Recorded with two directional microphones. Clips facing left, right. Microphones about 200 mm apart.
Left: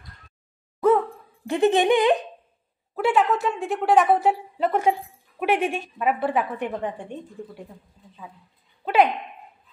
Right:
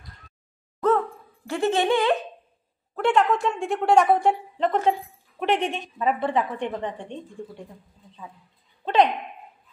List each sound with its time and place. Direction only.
0.7 s a sound: 10° left (ahead or behind)
2.9 s a woman's voice: 5° left (ahead or behind)
8.8 s speech: 10° left (ahead or behind)